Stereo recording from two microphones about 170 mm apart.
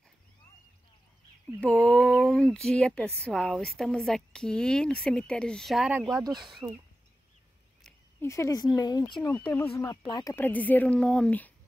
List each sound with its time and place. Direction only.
1.6 s speech: 5° left (ahead or behind)
6.2 s speech: 25° right (ahead or behind)
8.2 s speech: 15° left (ahead or behind)
9.2 s speech: 10° left (ahead or behind)
10.0 s speech: 25° left (ahead or behind)
10.3 s speech: 10° left (ahead or behind)